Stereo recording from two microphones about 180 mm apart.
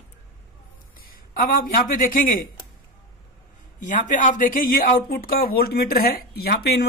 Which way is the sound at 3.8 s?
45° left (ahead or behind).